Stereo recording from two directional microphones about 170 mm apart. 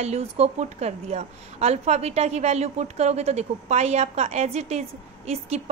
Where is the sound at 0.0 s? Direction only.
40° right (ahead or behind).